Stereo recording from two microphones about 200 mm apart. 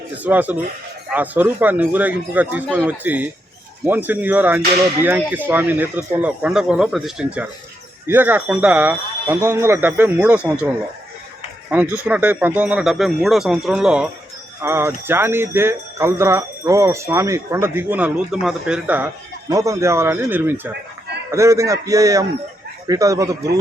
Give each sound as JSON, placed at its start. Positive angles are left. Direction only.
{"t": 0.2, "sound": "speech", "side_deg": -10}
{"t": 11.7, "sound": "speech", "side_deg": -10}